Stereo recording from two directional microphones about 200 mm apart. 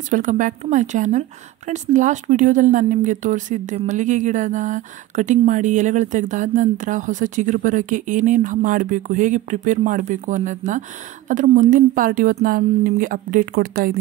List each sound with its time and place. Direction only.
0.1 s speech: 40° right (ahead or behind)